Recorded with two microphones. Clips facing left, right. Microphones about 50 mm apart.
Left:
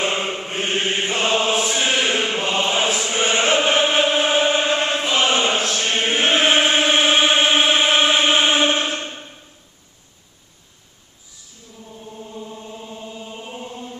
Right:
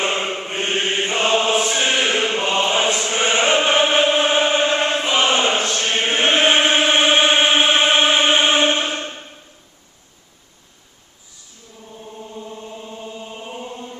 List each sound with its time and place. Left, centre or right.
0.0 s chant: centre
11.9 s chant: centre